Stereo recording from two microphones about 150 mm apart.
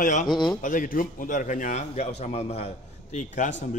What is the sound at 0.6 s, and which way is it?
A man's voice, 65° left (ahead or behind).